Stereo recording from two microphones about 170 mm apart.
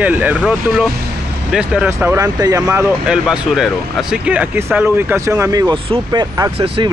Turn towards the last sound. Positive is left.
turn(degrees=-25)  # may be behind; listen again after turning